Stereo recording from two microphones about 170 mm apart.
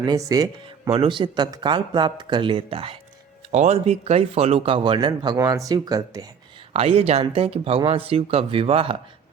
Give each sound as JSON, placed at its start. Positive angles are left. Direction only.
{"t": 0.0, "sound": "a man's voice", "side_deg": -25}
{"t": 6.7, "sound": "a man's voice", "side_deg": -35}